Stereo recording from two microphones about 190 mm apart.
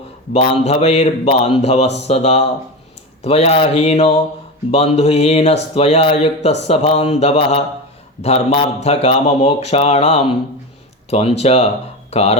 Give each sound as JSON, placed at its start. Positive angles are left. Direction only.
{"t": 0.3, "sound": "speech", "side_deg": 35}